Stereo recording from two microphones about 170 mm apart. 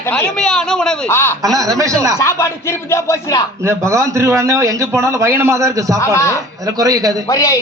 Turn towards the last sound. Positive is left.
turn(degrees=20)  # may be behind; listen again after turning